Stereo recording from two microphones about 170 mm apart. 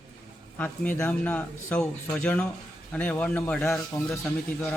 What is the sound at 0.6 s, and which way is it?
Speech, 10° left (ahead or behind).